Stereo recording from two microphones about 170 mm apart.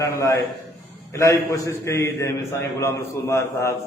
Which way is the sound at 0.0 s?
20° left (ahead or behind).